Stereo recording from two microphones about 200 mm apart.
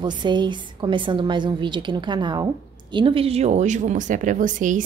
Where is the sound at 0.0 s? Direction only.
25° right (ahead or behind).